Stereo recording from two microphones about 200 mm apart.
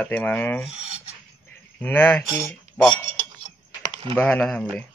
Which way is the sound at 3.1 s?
25° right (ahead or behind).